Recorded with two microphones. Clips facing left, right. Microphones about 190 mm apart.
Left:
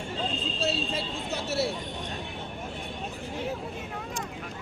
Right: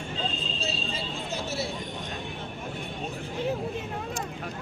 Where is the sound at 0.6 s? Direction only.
65° left (ahead or behind).